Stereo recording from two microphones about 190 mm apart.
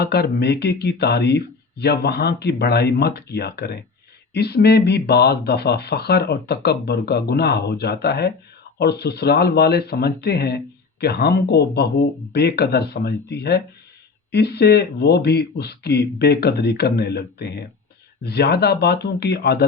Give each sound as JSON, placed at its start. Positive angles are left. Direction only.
{"t": 0.0, "sound": "speech", "side_deg": 60}